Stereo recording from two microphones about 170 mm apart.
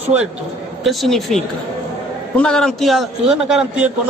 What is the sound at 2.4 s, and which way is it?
Speech, 5° left (ahead or behind).